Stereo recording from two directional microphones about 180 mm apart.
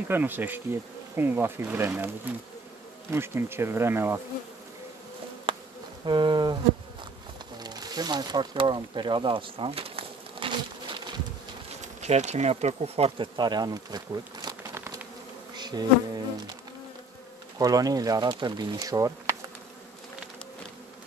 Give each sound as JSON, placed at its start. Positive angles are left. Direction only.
{"t": 0.1, "sound": "speech", "side_deg": -10}
{"t": 5.5, "sound": "insect", "side_deg": -30}
{"t": 6.0, "sound": "speech", "side_deg": -25}
{"t": 7.5, "sound": "speech", "side_deg": -20}
{"t": 15.5, "sound": "bee", "side_deg": -25}
{"t": 17.6, "sound": "speech", "side_deg": -20}